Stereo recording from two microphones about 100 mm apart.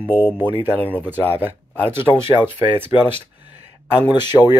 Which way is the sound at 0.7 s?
20° right (ahead or behind).